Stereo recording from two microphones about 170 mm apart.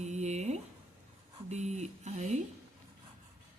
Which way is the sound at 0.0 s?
40° right (ahead or behind).